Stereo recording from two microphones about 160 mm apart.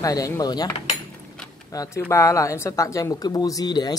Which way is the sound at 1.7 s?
20° left (ahead or behind).